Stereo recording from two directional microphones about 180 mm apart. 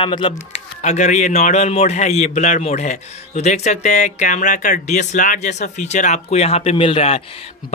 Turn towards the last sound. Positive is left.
turn(degrees=30)  # may be behind; listen again after turning